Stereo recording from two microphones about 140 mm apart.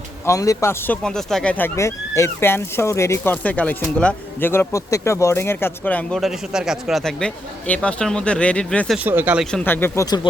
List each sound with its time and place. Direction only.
0.3 s a man's voice: 20° left (ahead or behind)
1.0 s speech: 5° left (ahead or behind)
6.1 s speech: centre (ahead or behind)
9.0 s speech: 10° right (ahead or behind)
9.5 s speech: 10° left (ahead or behind)